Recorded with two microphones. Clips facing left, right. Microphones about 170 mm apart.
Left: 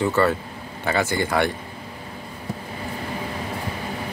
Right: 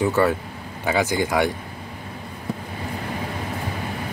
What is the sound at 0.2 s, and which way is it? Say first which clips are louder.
Speech: even; 10° right (ahead or behind).